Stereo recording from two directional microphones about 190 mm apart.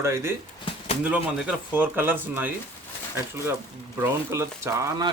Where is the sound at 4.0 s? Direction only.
15° right (ahead or behind).